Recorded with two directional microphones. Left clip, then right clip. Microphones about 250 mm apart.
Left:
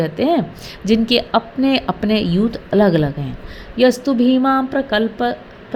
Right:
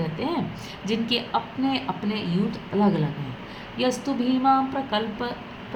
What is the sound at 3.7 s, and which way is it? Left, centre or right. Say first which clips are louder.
A woman's voice: left 11 dB; left.